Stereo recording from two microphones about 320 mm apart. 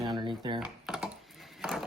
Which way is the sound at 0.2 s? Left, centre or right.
Centre.